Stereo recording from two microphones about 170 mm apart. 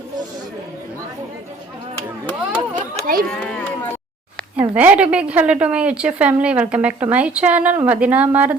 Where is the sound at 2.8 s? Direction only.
55° right (ahead or behind).